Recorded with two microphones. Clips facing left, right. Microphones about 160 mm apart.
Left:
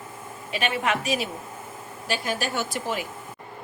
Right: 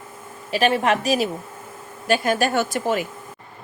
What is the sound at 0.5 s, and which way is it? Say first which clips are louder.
Speech: right 7 dB; 40° right (ahead or behind).